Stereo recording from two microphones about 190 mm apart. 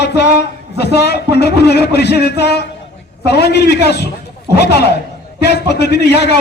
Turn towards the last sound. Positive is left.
turn(degrees=60)  # may be behind; listen again after turning